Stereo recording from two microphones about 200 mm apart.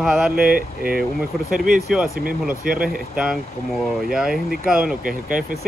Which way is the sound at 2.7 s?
5° right (ahead or behind).